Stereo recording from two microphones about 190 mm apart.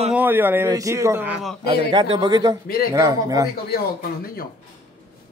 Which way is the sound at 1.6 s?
55° left (ahead or behind).